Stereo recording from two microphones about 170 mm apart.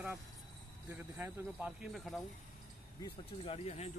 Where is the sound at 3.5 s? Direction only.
40° left (ahead or behind).